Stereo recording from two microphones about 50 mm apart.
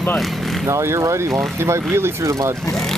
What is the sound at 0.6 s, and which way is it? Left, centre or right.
Speech, right.